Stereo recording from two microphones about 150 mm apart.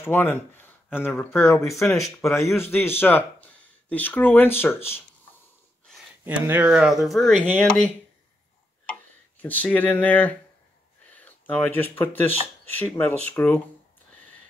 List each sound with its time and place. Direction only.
0.0 s speech: 15° left (ahead or behind)
2.0 s speech: centre (ahead or behind)
2.3 s speech: 20° left (ahead or behind)
6.2 s speech: 10° right (ahead or behind); by 7.9 s 10° left (ahead or behind)
9.4 s speech: 10° left (ahead or behind)